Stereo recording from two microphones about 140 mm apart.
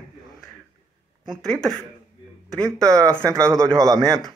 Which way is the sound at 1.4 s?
5° left (ahead or behind).